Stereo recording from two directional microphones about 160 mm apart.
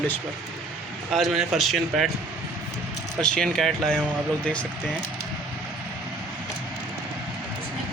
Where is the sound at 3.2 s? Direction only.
5° left (ahead or behind).